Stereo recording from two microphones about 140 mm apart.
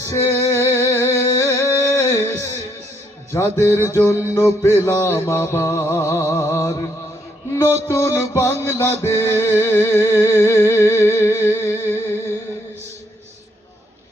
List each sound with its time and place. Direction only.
0.0 s music: 20° left (ahead or behind)
7.9 s music: 20° left (ahead or behind)